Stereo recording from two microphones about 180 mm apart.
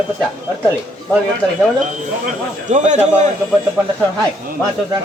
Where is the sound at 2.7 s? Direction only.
40° right (ahead or behind).